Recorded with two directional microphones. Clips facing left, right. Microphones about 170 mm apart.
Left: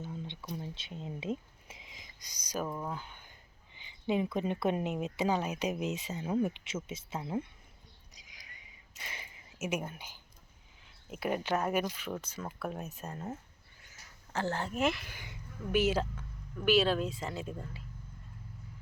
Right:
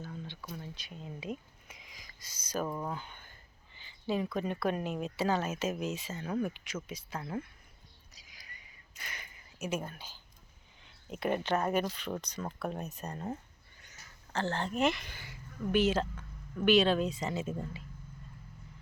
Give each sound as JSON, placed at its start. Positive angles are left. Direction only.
{"t": 0.0, "sound": "a sound", "side_deg": 20}
{"t": 2.6, "sound": "speech", "side_deg": 0}
{"t": 8.1, "sound": "a sound", "side_deg": 20}
{"t": 9.0, "sound": "speech", "side_deg": 25}
{"t": 11.1, "sound": "speech", "side_deg": 5}
{"t": 14.3, "sound": "speech", "side_deg": 10}
{"t": 15.1, "sound": "speech", "side_deg": 15}